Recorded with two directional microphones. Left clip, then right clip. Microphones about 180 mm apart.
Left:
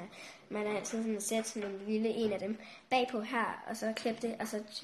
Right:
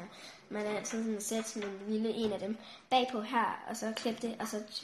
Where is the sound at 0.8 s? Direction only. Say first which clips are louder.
Even; 45° left (ahead or behind).